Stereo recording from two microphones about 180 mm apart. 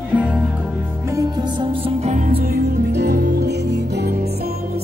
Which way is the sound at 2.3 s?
55° right (ahead or behind).